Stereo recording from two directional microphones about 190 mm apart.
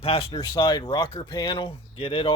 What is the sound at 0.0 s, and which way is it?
Speech, 30° left (ahead or behind).